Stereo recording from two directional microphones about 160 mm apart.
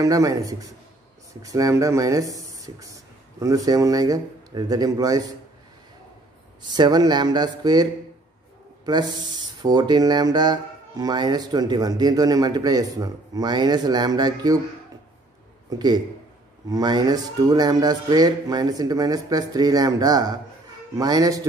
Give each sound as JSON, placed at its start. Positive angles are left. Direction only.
{"t": 0.0, "sound": "speech", "side_deg": -20}
{"t": 6.7, "sound": "speech", "side_deg": -25}
{"t": 16.6, "sound": "speech", "side_deg": -25}